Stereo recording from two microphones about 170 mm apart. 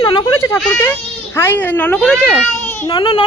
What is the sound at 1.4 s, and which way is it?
Speech, 10° left (ahead or behind).